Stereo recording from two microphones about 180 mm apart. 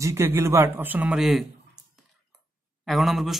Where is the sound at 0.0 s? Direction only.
15° right (ahead or behind).